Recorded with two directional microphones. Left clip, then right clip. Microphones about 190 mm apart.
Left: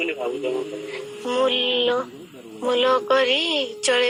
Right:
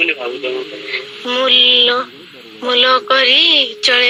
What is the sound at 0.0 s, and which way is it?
A woman's voice, 15° right (ahead or behind).